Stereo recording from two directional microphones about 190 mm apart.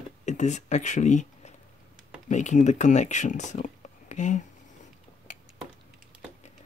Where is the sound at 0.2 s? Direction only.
40° left (ahead or behind).